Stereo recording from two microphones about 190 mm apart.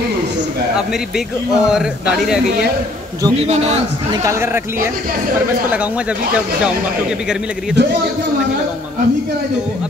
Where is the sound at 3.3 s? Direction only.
35° right (ahead or behind).